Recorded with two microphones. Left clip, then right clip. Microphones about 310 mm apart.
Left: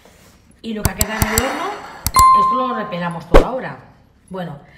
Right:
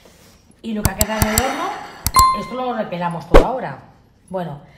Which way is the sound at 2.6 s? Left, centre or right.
Right.